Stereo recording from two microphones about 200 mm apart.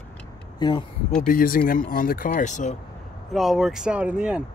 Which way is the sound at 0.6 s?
20° left (ahead or behind).